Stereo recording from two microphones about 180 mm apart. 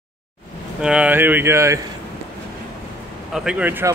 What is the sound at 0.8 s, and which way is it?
Speech, 5° right (ahead or behind).